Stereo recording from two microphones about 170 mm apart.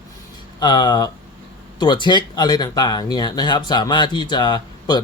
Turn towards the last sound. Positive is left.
turn(degrees=25)  # may be behind; listen again after turning